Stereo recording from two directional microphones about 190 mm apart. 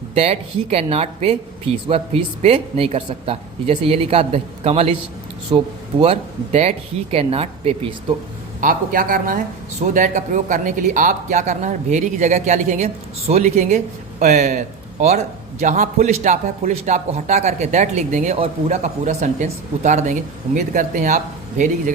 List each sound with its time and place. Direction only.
0.1 s a man's voice: 30° right (ahead or behind)
8.6 s a man's voice: 45° right (ahead or behind)